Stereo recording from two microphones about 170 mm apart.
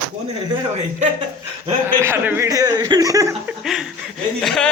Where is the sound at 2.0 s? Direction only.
15° right (ahead or behind).